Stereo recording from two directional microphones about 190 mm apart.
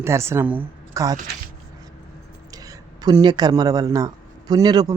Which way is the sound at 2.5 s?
20° right (ahead or behind).